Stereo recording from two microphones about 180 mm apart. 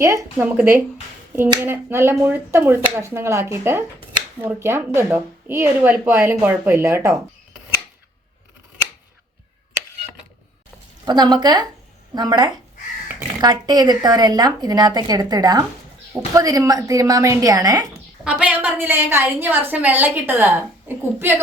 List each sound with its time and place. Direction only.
0.0 s a woman's voice: 15° right (ahead or behind)
11.0 s speech: 25° right (ahead or behind)
18.3 s a woman's voice: 5° right (ahead or behind)